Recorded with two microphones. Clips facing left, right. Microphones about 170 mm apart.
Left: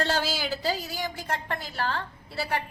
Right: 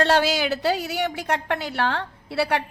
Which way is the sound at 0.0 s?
70° right (ahead or behind).